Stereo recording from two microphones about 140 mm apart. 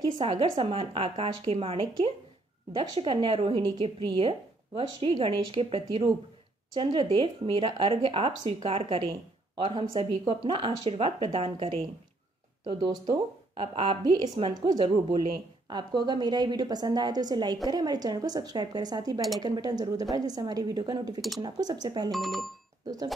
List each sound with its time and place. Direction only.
0.2 s a woman's voice: 40° right (ahead or behind)
22.1 s speech: centre (ahead or behind)